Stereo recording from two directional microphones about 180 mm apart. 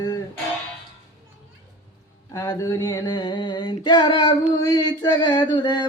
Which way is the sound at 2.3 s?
15° left (ahead or behind).